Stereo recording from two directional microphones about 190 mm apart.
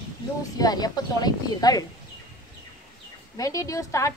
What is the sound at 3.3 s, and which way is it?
Speech, 20° left (ahead or behind).